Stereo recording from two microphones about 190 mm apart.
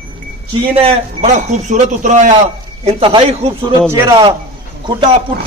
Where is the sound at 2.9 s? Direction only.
25° right (ahead or behind).